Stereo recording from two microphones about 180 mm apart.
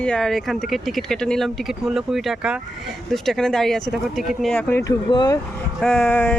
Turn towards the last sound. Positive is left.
turn(degrees=5)  # may be behind; listen again after turning